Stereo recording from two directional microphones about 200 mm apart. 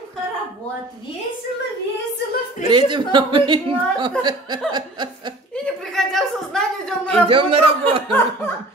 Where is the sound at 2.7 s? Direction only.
25° right (ahead or behind).